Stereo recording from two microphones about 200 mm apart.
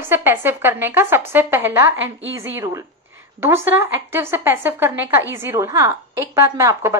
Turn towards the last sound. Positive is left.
turn(degrees=-15)  # may be behind; listen again after turning